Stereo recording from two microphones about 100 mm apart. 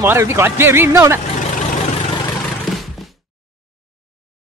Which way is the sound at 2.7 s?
Centre (ahead or behind).